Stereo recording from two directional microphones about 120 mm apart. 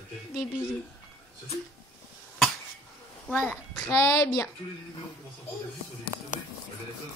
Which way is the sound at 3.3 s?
15° left (ahead or behind).